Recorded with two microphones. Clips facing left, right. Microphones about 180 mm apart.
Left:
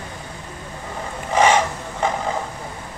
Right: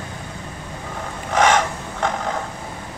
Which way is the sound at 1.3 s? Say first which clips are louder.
Left 1 dB; 5° left (ahead or behind).